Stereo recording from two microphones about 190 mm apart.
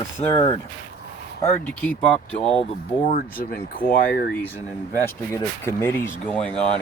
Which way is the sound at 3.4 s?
50° left (ahead or behind).